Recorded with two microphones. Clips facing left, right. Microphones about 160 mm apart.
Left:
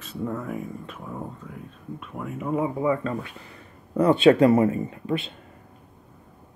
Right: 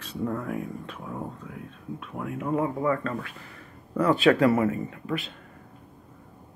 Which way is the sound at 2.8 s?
15° left (ahead or behind).